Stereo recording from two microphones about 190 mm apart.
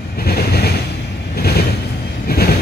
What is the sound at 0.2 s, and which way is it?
Vehicle, 55° left (ahead or behind).